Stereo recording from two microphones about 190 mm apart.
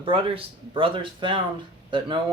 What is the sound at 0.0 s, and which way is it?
Speech, 25° right (ahead or behind).